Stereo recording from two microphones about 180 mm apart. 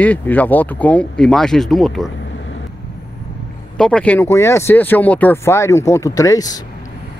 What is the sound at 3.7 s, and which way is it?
Speech, 5° left (ahead or behind).